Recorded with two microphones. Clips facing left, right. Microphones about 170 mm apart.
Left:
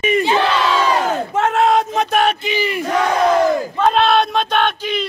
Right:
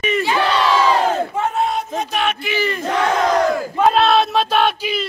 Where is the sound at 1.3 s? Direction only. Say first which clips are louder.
Left 5 dB; 85° left.